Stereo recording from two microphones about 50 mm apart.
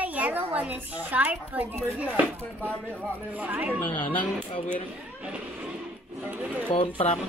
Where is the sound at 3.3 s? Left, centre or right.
Right.